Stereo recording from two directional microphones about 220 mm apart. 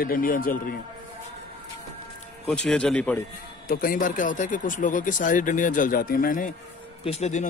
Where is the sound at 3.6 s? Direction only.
40° left (ahead or behind).